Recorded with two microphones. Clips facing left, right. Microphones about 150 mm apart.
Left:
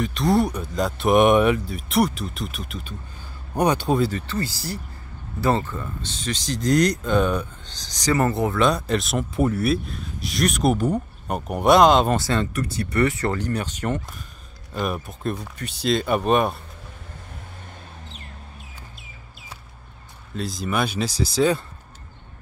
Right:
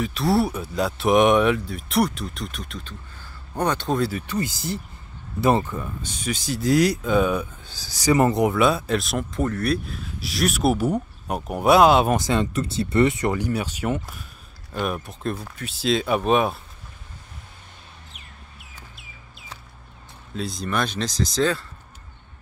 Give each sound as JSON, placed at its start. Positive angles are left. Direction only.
{"t": 0.0, "sound": "speech", "side_deg": 0}
{"t": 4.1, "sound": "speech", "side_deg": -15}
{"t": 12.2, "sound": "speech", "side_deg": -20}
{"t": 20.3, "sound": "speech", "side_deg": 0}